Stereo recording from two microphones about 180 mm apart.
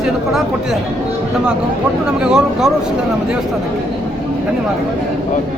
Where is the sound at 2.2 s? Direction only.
5° right (ahead or behind).